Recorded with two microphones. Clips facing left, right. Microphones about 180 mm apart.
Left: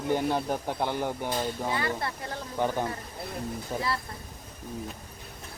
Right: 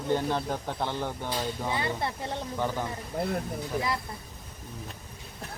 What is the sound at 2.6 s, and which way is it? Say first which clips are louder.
Speech: left 4 dB; 15° left (ahead or behind).